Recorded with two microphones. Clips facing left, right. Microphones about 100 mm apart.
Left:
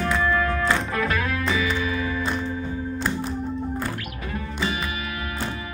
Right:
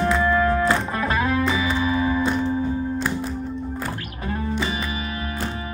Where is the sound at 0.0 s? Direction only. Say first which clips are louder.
Right 3 dB; 25° right (ahead or behind).